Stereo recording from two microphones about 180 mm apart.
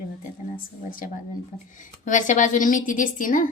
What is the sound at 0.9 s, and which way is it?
A woman's voice, 50° left (ahead or behind).